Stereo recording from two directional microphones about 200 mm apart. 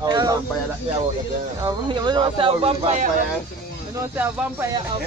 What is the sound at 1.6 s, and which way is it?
Speech, 20° right (ahead or behind).